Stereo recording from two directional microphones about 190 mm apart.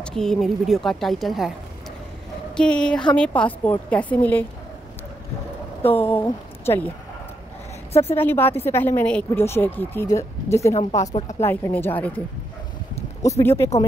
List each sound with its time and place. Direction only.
0.0 s a woman's voice: 5° left (ahead or behind)
2.5 s a woman's voice: 5° left (ahead or behind)
6.1 s speech: 10° left (ahead or behind)
7.9 s speech: 30° left (ahead or behind)
8.2 s speech: 10° left (ahead or behind)
10.7 s speech: 35° left (ahead or behind)
11.4 s speech: 10° left (ahead or behind)
13.2 s speech: 15° left (ahead or behind)